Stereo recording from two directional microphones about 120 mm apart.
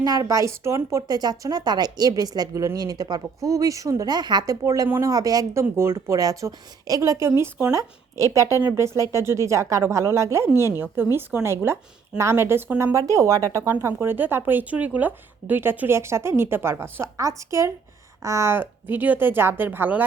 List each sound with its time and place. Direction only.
0.0 s speech: 30° right (ahead or behind); by 20.1 s 15° right (ahead or behind)